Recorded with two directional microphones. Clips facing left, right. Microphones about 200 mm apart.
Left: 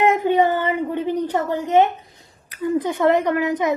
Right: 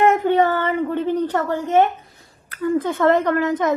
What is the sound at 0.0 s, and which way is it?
Speech, 15° left (ahead or behind).